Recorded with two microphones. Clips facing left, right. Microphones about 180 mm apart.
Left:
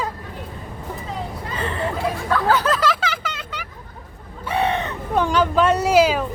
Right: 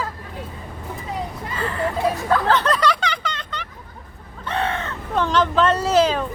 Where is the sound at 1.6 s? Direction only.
20° left (ahead or behind).